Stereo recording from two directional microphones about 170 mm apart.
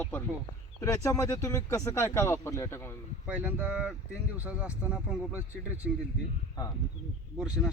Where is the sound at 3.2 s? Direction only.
10° right (ahead or behind).